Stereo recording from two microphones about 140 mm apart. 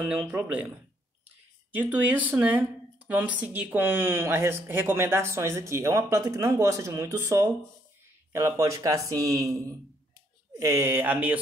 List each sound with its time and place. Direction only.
0.0 s speech: 15° right (ahead or behind)
1.7 s speech: 10° right (ahead or behind)